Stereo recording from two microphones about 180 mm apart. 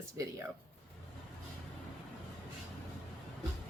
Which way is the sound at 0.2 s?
15° right (ahead or behind).